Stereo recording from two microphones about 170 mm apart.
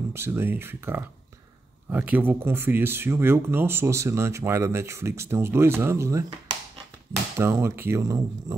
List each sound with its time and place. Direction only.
0.1 s speech: 15° right (ahead or behind)